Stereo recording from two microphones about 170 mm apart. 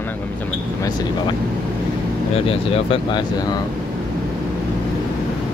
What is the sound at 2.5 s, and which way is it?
Speech, 35° left (ahead or behind).